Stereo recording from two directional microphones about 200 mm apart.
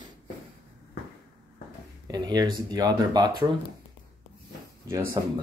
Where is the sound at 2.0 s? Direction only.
20° right (ahead or behind).